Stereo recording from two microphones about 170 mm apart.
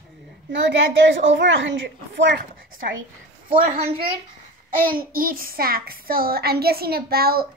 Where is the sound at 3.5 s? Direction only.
55° right (ahead or behind).